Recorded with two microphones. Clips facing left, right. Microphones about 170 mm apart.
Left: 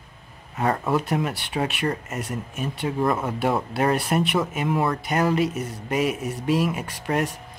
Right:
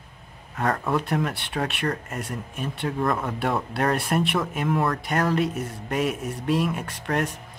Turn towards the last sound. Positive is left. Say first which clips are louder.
# left 1 dB
turn(degrees=5)  # may be behind; listen again after turning